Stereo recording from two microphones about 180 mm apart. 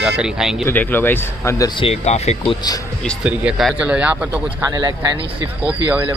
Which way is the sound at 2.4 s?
25° left (ahead or behind).